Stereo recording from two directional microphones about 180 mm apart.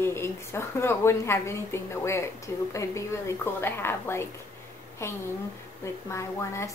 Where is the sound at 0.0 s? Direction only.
15° left (ahead or behind).